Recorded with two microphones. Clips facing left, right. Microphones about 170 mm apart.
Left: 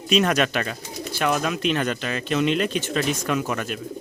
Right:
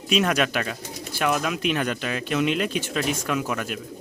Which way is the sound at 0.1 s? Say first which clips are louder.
Left 2 dB; 5° right (ahead or behind).